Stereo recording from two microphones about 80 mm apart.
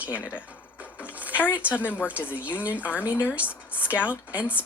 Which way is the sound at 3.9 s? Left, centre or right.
Left.